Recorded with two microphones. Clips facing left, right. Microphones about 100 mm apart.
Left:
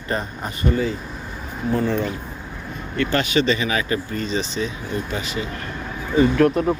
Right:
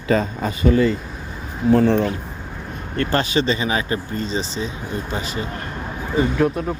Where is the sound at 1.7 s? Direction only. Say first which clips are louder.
Right 6 dB; 75° right (ahead or behind).